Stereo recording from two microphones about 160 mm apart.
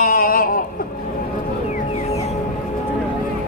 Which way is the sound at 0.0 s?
65° left (ahead or behind).